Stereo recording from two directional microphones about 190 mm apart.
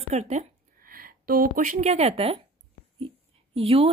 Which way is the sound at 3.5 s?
30° right (ahead or behind).